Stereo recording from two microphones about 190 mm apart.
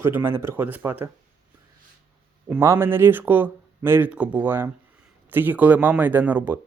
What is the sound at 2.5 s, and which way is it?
Speech, 10° right (ahead or behind).